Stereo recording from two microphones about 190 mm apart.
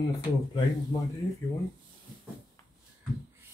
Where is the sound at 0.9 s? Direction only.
25° left (ahead or behind).